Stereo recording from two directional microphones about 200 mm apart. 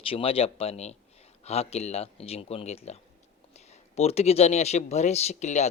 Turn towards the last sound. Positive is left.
turn(degrees=35)  # may be behind; listen again after turning